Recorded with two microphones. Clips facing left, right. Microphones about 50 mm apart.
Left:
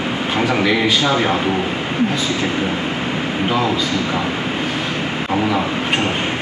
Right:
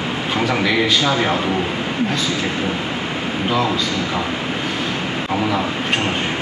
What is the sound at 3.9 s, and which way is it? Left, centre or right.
Speech, left.